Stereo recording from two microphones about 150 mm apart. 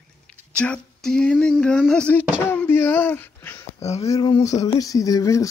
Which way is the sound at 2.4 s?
15° left (ahead or behind).